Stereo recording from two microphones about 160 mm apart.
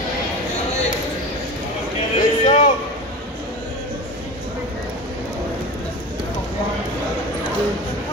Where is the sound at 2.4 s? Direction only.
50° left (ahead or behind).